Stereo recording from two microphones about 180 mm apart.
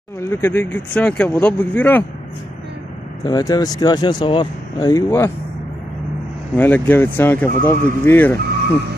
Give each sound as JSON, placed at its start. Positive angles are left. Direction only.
{"t": 0.2, "sound": "speech", "side_deg": 15}
{"t": 3.3, "sound": "speech", "side_deg": 20}
{"t": 6.5, "sound": "speech", "side_deg": 10}